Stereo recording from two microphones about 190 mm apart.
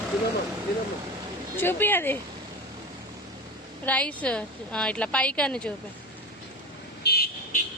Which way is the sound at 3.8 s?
5° left (ahead or behind).